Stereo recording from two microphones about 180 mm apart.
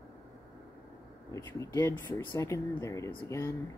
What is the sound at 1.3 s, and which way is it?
Speech, 15° left (ahead or behind).